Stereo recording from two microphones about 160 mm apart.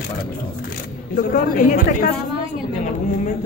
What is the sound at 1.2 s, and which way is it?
Speech, 60° left (ahead or behind).